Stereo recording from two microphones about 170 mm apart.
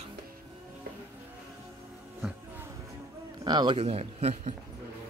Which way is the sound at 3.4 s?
25° right (ahead or behind).